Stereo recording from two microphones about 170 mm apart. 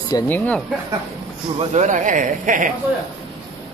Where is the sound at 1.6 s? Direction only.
45° right (ahead or behind).